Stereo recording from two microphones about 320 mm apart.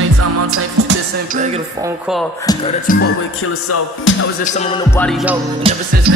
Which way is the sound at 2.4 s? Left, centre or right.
Centre.